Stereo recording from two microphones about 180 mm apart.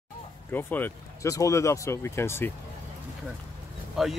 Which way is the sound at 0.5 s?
10° left (ahead or behind).